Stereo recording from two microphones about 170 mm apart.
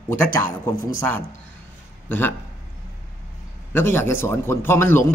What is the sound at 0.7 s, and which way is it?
Speech, 15° left (ahead or behind).